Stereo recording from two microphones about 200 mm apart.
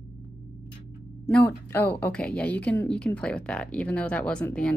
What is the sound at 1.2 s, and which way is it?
A woman's voice, 10° left (ahead or behind).